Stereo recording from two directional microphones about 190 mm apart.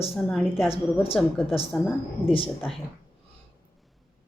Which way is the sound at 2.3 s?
30° left (ahead or behind).